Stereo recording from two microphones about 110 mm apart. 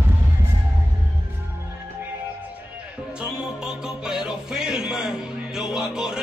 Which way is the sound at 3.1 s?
5° right (ahead or behind).